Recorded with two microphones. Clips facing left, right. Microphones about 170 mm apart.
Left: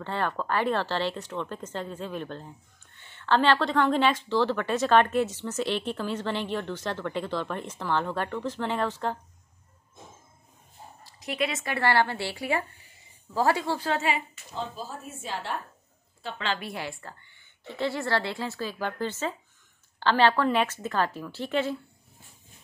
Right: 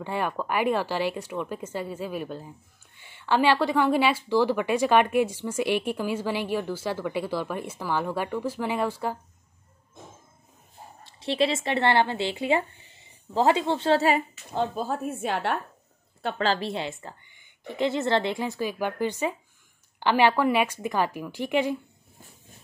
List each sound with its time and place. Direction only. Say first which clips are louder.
0.0 s speech: right 1 dB; 10° right (ahead or behind)
11.1 s speech: right 5 dB; 30° right (ahead or behind)
14.5 s a woman's voice: right 8 dB; 60° right (ahead or behind)
16.5 s speech: right 5 dB; 25° right (ahead or behind)